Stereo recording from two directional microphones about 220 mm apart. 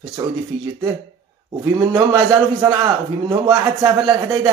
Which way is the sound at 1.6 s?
15° right (ahead or behind).